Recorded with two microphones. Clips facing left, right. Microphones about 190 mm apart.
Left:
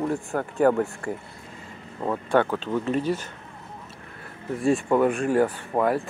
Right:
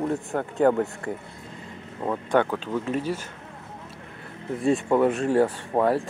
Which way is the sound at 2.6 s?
10° right (ahead or behind).